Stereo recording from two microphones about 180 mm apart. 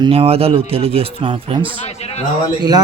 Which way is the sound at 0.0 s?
35° right (ahead or behind).